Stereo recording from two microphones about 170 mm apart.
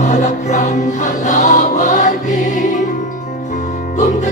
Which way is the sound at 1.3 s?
45° left (ahead or behind).